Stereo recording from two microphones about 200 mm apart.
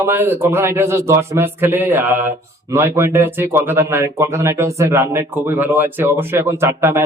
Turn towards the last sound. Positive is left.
turn(degrees=-10)  # may be behind; listen again after turning